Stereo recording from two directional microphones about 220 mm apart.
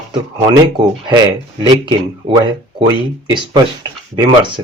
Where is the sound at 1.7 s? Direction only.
20° right (ahead or behind).